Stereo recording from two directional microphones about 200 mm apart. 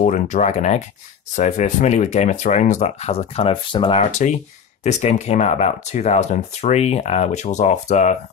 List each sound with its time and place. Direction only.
0.0 s speech: 40° left (ahead or behind)
4.0 s speech: 35° left (ahead or behind)